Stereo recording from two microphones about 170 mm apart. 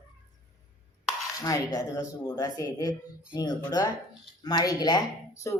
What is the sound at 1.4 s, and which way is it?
A woman's voice, 20° left (ahead or behind).